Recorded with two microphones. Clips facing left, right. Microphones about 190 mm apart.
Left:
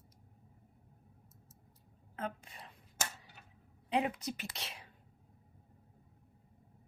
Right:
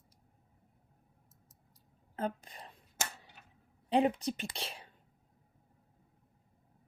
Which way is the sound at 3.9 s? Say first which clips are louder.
Right 5 dB; 30° right (ahead or behind).